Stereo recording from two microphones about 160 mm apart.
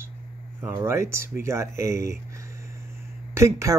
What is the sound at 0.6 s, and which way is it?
Speech, 15° right (ahead or behind).